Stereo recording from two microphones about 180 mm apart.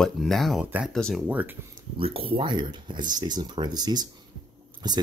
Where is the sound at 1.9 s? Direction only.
30° right (ahead or behind).